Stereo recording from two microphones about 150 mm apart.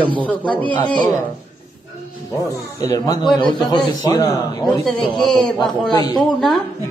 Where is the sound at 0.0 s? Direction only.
35° right (ahead or behind).